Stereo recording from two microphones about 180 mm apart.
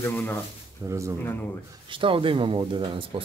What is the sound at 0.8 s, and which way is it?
Speech, 15° right (ahead or behind).